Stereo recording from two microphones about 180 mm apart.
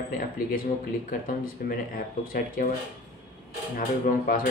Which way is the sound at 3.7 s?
50° left (ahead or behind).